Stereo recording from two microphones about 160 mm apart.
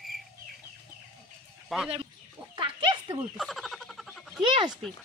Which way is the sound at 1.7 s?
Centre (ahead or behind).